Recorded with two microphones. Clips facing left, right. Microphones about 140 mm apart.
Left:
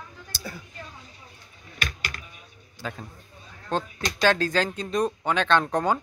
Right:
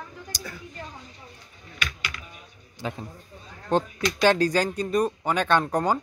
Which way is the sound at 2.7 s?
20° right (ahead or behind).